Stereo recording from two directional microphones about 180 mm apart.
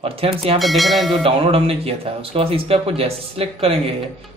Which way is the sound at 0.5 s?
Centre (ahead or behind).